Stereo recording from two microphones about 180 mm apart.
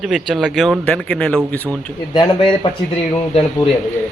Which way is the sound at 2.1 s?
25° left (ahead or behind).